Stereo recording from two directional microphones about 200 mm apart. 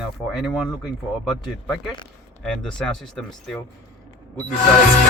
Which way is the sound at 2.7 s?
5° left (ahead or behind).